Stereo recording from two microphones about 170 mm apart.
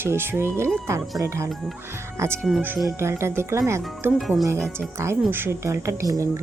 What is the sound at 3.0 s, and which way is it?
Speech, 15° right (ahead or behind).